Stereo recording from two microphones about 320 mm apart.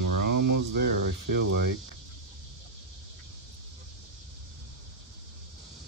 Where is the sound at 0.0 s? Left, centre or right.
Right.